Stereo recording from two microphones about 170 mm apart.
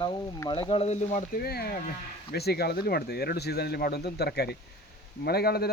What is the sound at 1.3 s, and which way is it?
Speech, 65° left (ahead or behind).